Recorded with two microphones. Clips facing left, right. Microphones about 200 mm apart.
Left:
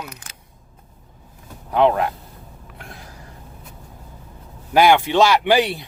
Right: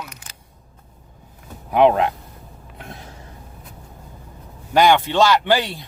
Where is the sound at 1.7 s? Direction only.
15° right (ahead or behind).